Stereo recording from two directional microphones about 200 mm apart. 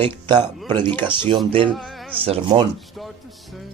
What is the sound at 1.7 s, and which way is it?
Music, centre (ahead or behind).